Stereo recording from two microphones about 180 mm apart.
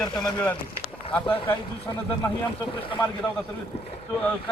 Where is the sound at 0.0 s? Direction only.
20° left (ahead or behind).